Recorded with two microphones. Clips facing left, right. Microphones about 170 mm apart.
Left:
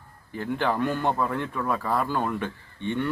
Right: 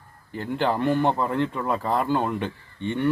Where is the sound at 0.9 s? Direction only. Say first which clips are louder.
Right 4 dB; 20° right (ahead or behind).